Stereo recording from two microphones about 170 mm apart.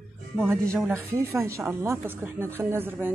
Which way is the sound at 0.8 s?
15° right (ahead or behind).